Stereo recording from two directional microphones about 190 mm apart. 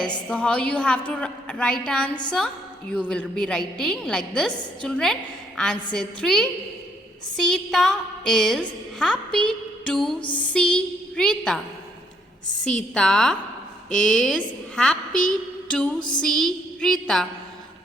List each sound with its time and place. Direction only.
0.3 s a woman's voice: 5° left (ahead or behind)
10.2 s music: 25° left (ahead or behind)
10.4 s a woman's voice: 5° left (ahead or behind)
12.7 s a woman's voice: 5° left (ahead or behind)